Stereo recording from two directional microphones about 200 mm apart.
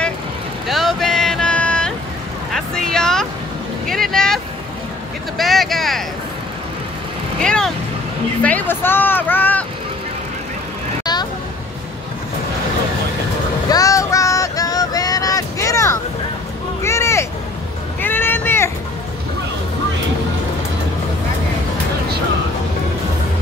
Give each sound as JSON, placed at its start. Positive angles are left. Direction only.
{"t": 0.7, "sound": "a sound", "side_deg": 0}
{"t": 2.5, "sound": "vehicle", "side_deg": 5}
{"t": 5.4, "sound": "speech", "side_deg": 0}
{"t": 7.3, "sound": "vehicle", "side_deg": 5}
{"t": 8.4, "sound": "speech", "side_deg": 5}
{"t": 13.7, "sound": "a sound", "side_deg": 15}
{"t": 18.0, "sound": "cat", "side_deg": 10}